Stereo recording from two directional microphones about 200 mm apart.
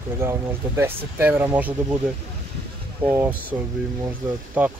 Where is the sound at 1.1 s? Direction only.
10° right (ahead or behind).